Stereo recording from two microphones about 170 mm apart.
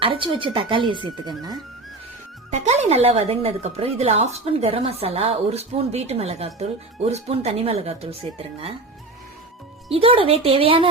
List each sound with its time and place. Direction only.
0.0 s speech: 30° right (ahead or behind)
2.5 s speech: 40° right (ahead or behind)
9.9 s speech: 35° right (ahead or behind)